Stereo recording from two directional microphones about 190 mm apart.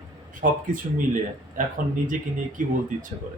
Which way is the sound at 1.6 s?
45° right (ahead or behind).